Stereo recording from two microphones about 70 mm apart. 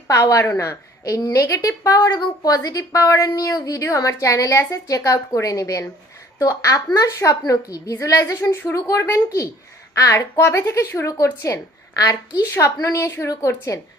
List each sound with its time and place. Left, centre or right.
0.1 s a woman's voice: left
2.0 s a woman's voice: left